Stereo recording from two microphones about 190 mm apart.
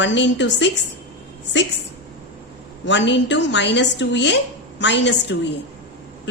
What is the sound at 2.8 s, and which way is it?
A woman's voice, 70° left (ahead or behind).